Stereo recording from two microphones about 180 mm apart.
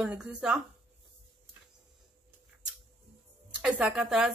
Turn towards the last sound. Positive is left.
turn(degrees=-5)  # may be behind; listen again after turning